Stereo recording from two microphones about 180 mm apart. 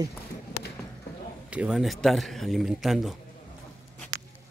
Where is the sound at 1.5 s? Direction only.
5° right (ahead or behind).